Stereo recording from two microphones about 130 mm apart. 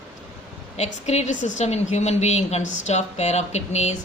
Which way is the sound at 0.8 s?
60° left (ahead or behind).